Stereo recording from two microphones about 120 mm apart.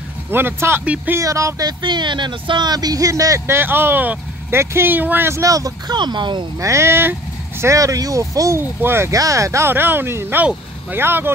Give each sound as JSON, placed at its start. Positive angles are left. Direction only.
{"t": 0.3, "sound": "speech", "side_deg": -20}
{"t": 1.2, "sound": "speech", "side_deg": -30}
{"t": 6.6, "sound": "speech", "side_deg": -20}